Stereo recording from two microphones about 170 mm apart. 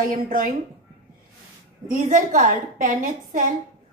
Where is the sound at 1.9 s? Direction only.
50° right (ahead or behind).